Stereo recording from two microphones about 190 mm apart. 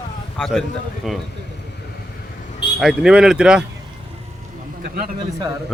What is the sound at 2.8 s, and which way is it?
Speech, 5° right (ahead or behind).